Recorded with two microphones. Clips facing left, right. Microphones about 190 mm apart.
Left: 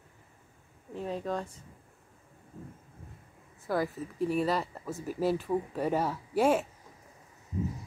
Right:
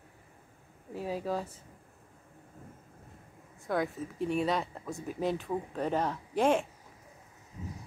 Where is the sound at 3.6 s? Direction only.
5° left (ahead or behind).